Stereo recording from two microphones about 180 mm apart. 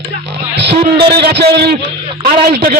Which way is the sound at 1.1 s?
65° right (ahead or behind).